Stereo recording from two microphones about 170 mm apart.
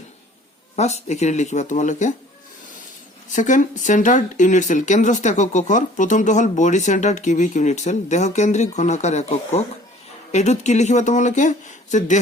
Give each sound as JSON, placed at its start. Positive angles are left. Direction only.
{"t": 0.8, "sound": "speech", "side_deg": 40}
{"t": 3.3, "sound": "speech", "side_deg": 50}